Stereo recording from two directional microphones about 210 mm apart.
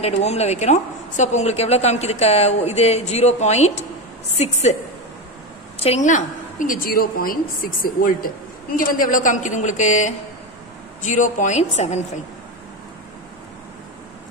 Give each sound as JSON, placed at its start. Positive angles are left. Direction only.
{"t": 0.0, "sound": "a woman's voice", "side_deg": 30}
{"t": 5.8, "sound": "a woman's voice", "side_deg": 30}